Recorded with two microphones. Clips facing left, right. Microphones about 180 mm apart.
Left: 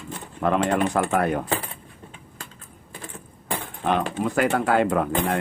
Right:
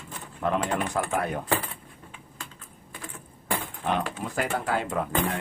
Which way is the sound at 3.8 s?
70° left (ahead or behind).